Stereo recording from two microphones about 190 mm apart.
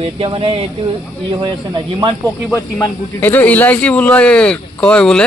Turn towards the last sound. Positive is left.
turn(degrees=5)  # may be behind; listen again after turning